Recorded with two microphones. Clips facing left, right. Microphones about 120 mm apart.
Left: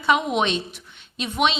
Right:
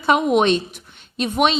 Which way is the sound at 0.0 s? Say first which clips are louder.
Right 5 dB; 45° right (ahead or behind).